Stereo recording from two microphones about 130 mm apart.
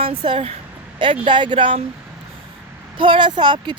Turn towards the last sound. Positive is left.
turn(degrees=-40)  # may be behind; listen again after turning